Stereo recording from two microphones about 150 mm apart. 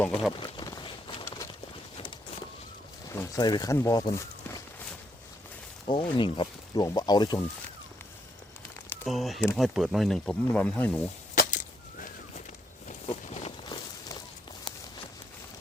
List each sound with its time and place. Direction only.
0.0 s speech: centre (ahead or behind)
0.3 s a sound: 30° left (ahead or behind)
3.1 s speech: 20° left (ahead or behind)
5.8 s speech: 30° left (ahead or behind)
9.0 s speech: centre (ahead or behind)
11.3 s chop: 65° left (ahead or behind)
13.1 s a sound: 40° left (ahead or behind)